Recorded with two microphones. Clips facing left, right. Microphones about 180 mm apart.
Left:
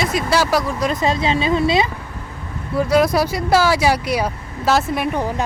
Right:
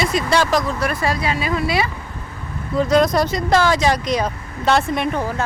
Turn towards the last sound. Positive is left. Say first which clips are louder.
# even
turn(degrees=5)  # may be behind; listen again after turning